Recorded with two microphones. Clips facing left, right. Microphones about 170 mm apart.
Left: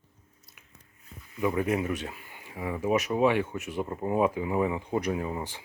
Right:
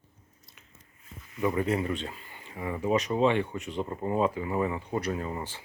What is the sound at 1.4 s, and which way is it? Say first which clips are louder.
Speech: even; 5° left (ahead or behind).